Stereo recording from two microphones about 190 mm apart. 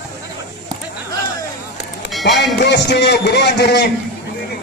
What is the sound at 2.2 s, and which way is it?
Speech, 65° left (ahead or behind).